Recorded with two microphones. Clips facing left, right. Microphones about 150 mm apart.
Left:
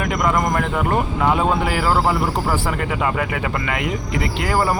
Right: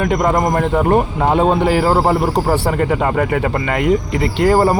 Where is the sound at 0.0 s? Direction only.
35° right (ahead or behind).